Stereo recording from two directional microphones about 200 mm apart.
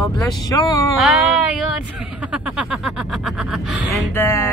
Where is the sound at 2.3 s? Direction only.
5° right (ahead or behind).